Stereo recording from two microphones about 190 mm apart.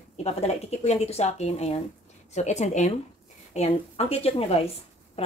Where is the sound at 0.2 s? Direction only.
35° left (ahead or behind).